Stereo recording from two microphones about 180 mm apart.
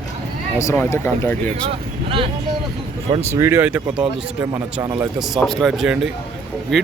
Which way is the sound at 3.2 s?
15° right (ahead or behind).